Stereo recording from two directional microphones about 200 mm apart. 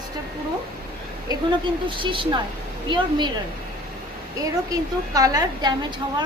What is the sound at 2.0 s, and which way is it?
A woman's voice, 25° right (ahead or behind).